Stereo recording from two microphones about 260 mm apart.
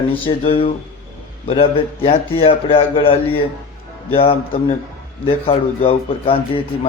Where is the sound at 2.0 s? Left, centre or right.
Left.